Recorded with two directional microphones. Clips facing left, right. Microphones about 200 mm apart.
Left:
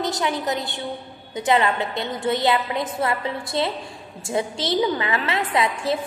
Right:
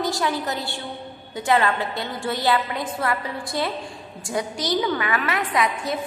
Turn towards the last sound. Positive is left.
turn(degrees=30)  # may be behind; listen again after turning